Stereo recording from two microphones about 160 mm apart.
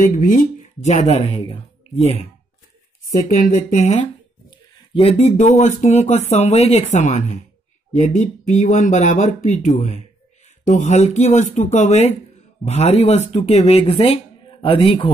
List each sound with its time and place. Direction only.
0.0 s speech: 55° left (ahead or behind)
3.1 s speech: 55° left (ahead or behind); by 15.0 s 35° left (ahead or behind)